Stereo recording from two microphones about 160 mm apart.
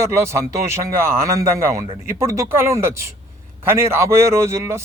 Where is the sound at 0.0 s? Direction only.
15° right (ahead or behind).